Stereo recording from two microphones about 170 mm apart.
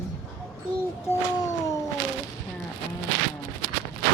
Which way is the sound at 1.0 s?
15° left (ahead or behind).